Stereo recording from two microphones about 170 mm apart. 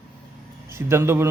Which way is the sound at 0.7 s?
15° right (ahead or behind).